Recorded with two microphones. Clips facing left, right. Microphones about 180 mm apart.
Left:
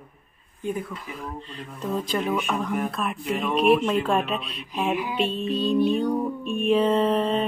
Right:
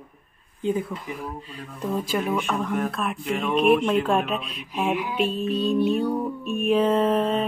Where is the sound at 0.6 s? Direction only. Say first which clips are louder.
Right 4 dB; 20° right (ahead or behind).